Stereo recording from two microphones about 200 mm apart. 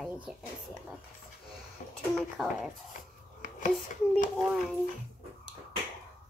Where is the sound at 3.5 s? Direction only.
40° left (ahead or behind).